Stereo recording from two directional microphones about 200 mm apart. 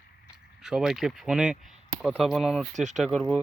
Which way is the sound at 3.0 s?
Centre (ahead or behind).